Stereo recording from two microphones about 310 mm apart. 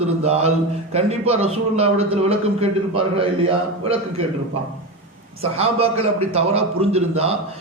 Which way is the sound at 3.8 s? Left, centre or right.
Centre.